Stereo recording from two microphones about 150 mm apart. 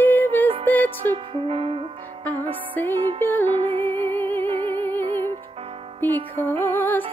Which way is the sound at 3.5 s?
35° right (ahead or behind).